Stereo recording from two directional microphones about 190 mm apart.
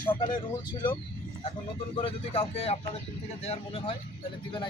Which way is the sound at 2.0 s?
30° left (ahead or behind).